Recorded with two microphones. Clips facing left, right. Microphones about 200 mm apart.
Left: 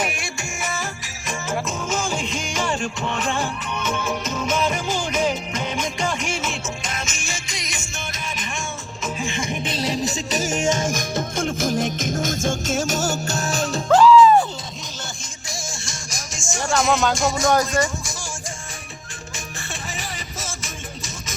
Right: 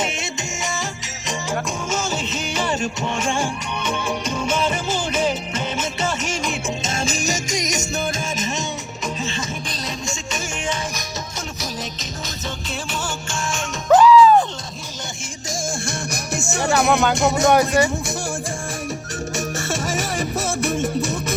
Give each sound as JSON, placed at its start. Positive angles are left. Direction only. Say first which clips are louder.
{"t": 0.0, "sound": "music", "louder": "right 1 dB", "side_deg": -25}
{"t": 1.9, "sound": "music", "louder": "even", "side_deg": 10}
{"t": 2.6, "sound": "music", "louder": "right 2 dB", "side_deg": -5}
{"t": 4.4, "sound": "music", "louder": "even", "side_deg": 10}
{"t": 6.8, "sound": "music", "louder": "right 7 dB", "side_deg": -30}
{"t": 9.2, "sound": "music", "louder": "left 2 dB", "side_deg": 20}
{"t": 14.0, "sound": "music", "louder": "left 1 dB", "side_deg": 0}
{"t": 15.9, "sound": "music", "louder": "right 9 dB", "side_deg": -60}
{"t": 17.2, "sound": "speech", "louder": "right 3 dB", "side_deg": -65}
{"t": 20.1, "sound": "music", "louder": "right 11 dB", "side_deg": -60}